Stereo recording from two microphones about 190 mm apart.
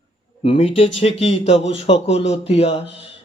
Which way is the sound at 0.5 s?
30° left (ahead or behind).